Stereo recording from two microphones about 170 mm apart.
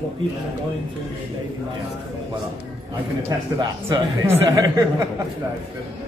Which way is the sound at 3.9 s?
20° right (ahead or behind).